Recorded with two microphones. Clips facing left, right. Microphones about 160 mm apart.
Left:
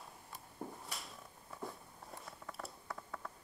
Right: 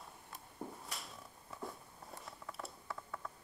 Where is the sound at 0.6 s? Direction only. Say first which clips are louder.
Even; centre (ahead or behind).